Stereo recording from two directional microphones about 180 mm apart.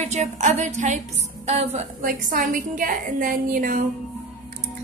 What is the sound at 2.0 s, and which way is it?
A woman's voice, 50° right (ahead or behind).